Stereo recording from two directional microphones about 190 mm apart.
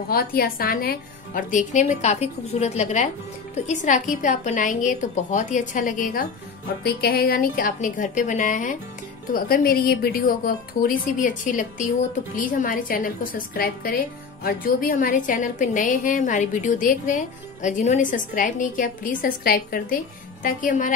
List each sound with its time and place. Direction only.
0.1 s a woman's voice: 50° left (ahead or behind)